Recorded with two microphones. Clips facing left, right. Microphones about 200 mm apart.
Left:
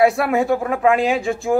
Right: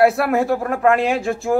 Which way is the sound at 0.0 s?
Centre (ahead or behind).